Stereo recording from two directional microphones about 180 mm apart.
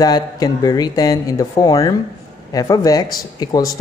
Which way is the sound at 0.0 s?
20° left (ahead or behind).